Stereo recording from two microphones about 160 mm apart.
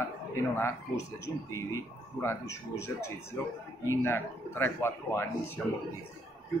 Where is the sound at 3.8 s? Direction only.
15° left (ahead or behind).